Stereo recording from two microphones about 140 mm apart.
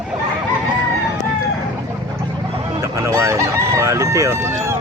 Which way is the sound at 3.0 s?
20° right (ahead or behind).